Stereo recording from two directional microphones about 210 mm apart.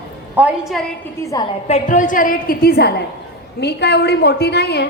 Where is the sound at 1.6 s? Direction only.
35° left (ahead or behind).